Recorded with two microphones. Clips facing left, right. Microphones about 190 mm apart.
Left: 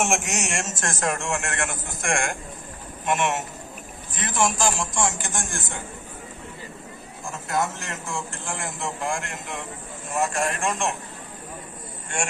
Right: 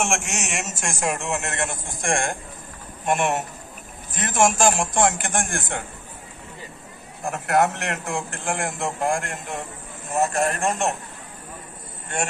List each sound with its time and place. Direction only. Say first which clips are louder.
0.0 s a man's voice: left 1 dB; centre (ahead or behind); by 1.8 s 20° right (ahead or behind)
2.0 s a man's voice: right 2 dB; 35° right (ahead or behind)
4.2 s a man's voice: right 4 dB; 50° right (ahead or behind)
7.2 s a man's voice: right 6 dB; 65° right (ahead or behind); by 11.0 s 40° right (ahead or behind)